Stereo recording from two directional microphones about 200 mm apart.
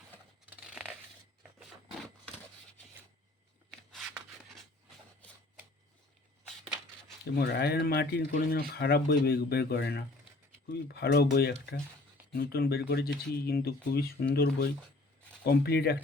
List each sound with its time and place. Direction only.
0.7 s coin: 5° right (ahead or behind)
3.7 s a sound: centre (ahead or behind)
7.3 s speech: 55° left (ahead or behind)
15.4 s speech: 50° left (ahead or behind)